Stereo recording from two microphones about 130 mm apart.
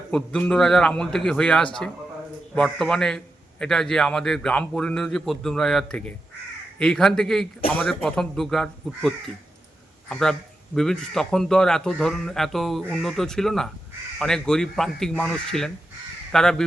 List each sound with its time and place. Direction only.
0.1 s a man's voice: 5° left (ahead or behind)